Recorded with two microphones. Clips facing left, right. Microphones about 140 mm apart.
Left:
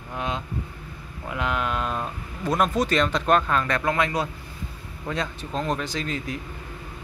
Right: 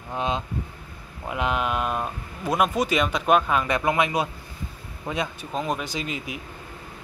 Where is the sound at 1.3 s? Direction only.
20° right (ahead or behind).